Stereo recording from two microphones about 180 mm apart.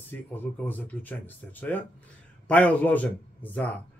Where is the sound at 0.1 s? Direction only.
10° left (ahead or behind).